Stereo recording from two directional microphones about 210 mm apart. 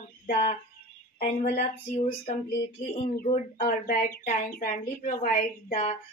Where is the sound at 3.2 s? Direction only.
45° left (ahead or behind).